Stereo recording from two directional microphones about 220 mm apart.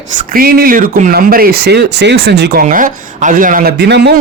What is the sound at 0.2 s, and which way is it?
Speech, 40° right (ahead or behind).